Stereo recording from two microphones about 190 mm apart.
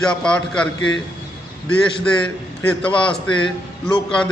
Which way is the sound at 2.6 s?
5° left (ahead or behind).